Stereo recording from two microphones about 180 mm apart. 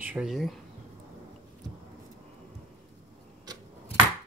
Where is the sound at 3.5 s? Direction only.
20° right (ahead or behind).